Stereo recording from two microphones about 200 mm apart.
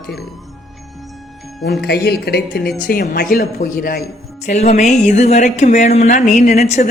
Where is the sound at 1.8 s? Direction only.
50° left (ahead or behind).